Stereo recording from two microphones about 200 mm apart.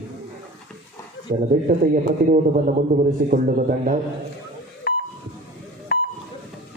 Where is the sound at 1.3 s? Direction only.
45° right (ahead or behind).